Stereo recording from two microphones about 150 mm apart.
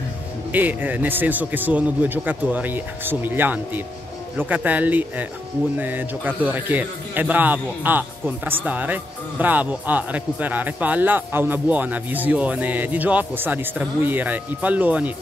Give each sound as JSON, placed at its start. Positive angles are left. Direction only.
{"t": 0.5, "sound": "speech", "side_deg": -10}